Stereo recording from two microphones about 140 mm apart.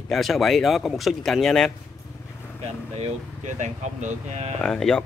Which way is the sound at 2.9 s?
55° right (ahead or behind).